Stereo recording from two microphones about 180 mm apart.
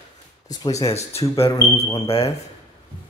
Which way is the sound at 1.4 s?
20° left (ahead or behind).